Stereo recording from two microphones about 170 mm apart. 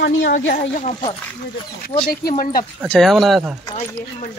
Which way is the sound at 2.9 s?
Centre (ahead or behind).